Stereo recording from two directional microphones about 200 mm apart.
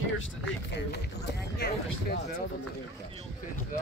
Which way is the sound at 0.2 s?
65° left (ahead or behind).